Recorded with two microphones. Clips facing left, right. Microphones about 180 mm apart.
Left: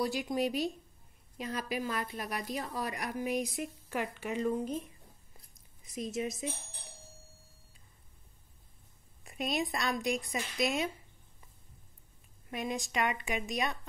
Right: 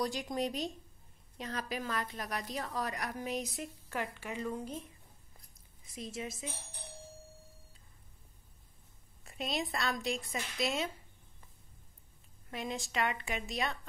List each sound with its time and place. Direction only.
0.0 s a woman's voice: 5° left (ahead or behind)
5.9 s a woman's voice: 20° left (ahead or behind)
9.2 s a woman's voice: 15° left (ahead or behind)
12.4 s a woman's voice: 15° left (ahead or behind)